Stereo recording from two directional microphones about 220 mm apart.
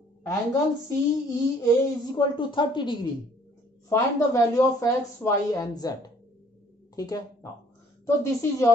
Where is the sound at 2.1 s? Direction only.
20° left (ahead or behind).